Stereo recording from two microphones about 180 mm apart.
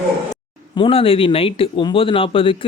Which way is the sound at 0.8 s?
30° left (ahead or behind).